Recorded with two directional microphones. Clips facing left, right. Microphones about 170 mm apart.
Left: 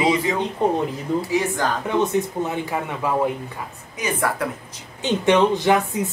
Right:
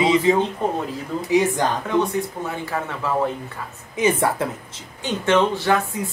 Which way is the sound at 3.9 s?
25° right (ahead or behind).